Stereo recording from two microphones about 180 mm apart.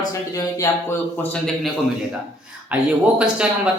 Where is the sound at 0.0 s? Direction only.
20° left (ahead or behind).